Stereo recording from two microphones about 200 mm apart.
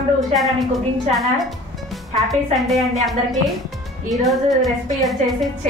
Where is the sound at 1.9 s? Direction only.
Centre (ahead or behind).